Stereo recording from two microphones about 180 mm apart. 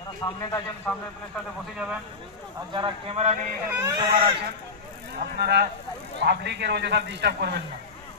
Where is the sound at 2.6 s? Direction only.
25° right (ahead or behind).